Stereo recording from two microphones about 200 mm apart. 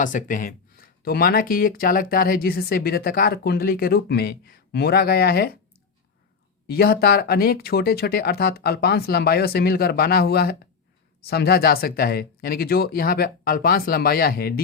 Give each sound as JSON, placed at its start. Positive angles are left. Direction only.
{"t": 0.0, "sound": "speech", "side_deg": 40}
{"t": 6.7, "sound": "speech", "side_deg": 50}